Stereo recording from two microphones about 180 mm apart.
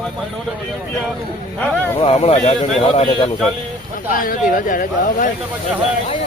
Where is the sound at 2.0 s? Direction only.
35° left (ahead or behind).